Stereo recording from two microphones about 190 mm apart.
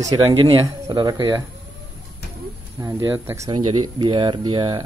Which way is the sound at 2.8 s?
15° right (ahead or behind).